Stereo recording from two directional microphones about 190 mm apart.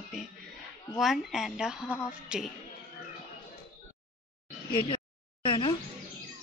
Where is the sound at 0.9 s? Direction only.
Centre (ahead or behind).